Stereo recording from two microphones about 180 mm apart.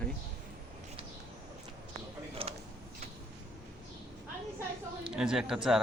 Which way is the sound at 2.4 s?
30° right (ahead or behind).